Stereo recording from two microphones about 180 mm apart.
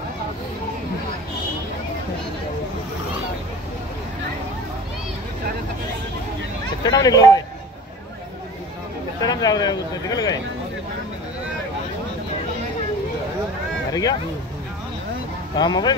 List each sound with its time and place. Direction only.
6.8 s speech: 20° left (ahead or behind)
9.2 s speech: 20° left (ahead or behind)
15.5 s speech: 25° left (ahead or behind)